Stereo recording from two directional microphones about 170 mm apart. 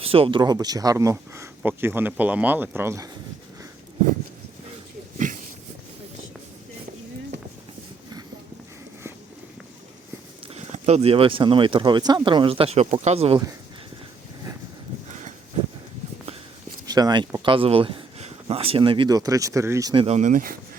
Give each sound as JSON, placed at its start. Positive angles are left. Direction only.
{"t": 0.0, "sound": "speech", "side_deg": -35}
{"t": 5.1, "sound": "a sound", "side_deg": -50}
{"t": 10.5, "sound": "speech", "side_deg": -40}
{"t": 16.8, "sound": "speech", "side_deg": -25}
{"t": 20.1, "sound": "speech", "side_deg": -45}